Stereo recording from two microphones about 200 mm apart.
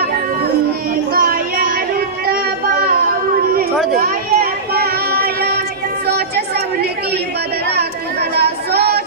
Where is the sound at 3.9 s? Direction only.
50° right (ahead or behind).